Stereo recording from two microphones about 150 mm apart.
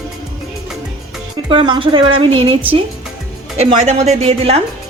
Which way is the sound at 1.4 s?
35° right (ahead or behind).